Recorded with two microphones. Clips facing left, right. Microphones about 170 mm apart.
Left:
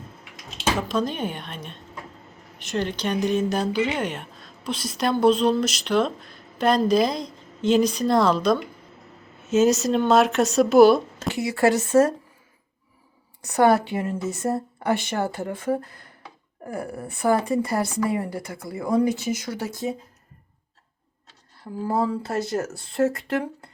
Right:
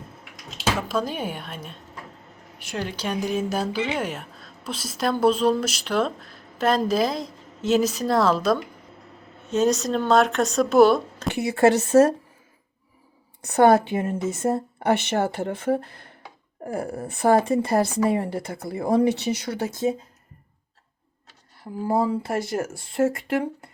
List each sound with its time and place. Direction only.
0.5 s speech: 5° right (ahead or behind)
11.3 s a woman's voice: 20° right (ahead or behind)
13.6 s a woman's voice: 25° right (ahead or behind)
21.8 s a woman's voice: 20° right (ahead or behind)